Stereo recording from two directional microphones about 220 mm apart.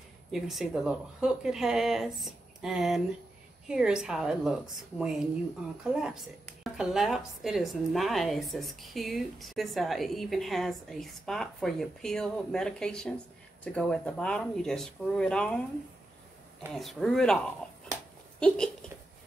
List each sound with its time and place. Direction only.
0.3 s a woman's voice: centre (ahead or behind)
16.7 s a woman's voice: centre (ahead or behind)
18.4 s a woman's voice: 5° left (ahead or behind)